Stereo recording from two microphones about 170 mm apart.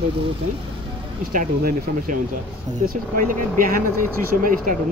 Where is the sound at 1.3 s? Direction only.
50° right (ahead or behind).